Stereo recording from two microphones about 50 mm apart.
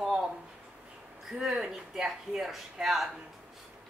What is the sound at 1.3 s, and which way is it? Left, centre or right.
Speech, centre.